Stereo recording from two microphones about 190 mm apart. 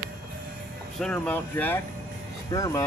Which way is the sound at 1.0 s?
5° left (ahead or behind).